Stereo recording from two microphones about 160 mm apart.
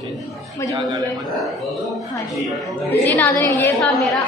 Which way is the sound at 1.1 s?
Centre (ahead or behind).